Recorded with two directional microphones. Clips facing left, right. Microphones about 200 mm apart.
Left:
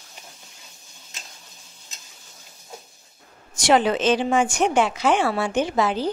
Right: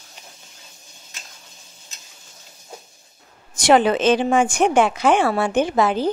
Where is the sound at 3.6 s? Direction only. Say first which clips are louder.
Right 3 dB; 55° right (ahead or behind).